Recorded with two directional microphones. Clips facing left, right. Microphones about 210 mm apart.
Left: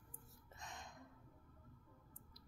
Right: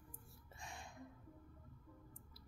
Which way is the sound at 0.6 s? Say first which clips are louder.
Right 2 dB; 10° right (ahead or behind).